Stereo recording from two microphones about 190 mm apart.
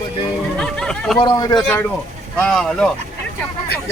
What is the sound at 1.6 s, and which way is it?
Speech, 10° left (ahead or behind).